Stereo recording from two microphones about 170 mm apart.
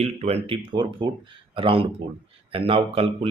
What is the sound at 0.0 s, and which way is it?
Speech, 35° right (ahead or behind).